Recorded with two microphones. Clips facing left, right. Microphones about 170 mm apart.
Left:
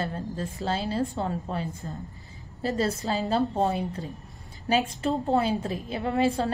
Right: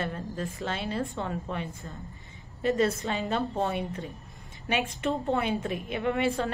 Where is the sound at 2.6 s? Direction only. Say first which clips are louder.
Right 1 dB; 35° left (ahead or behind).